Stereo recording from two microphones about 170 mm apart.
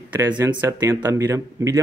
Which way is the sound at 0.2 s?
15° right (ahead or behind).